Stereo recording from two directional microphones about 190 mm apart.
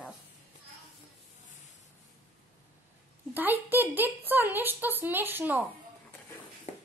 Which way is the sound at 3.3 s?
10° right (ahead or behind).